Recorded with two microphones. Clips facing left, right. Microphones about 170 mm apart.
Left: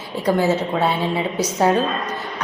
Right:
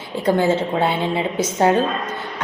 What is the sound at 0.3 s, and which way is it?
A woman's voice, 25° right (ahead or behind).